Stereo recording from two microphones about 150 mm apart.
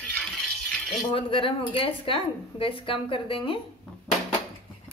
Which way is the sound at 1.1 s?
35° left (ahead or behind).